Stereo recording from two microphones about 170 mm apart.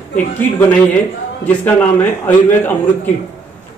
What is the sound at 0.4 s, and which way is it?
A man's voice, 10° left (ahead or behind).